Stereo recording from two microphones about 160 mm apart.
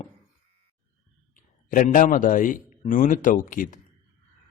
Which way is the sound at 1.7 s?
55° left (ahead or behind).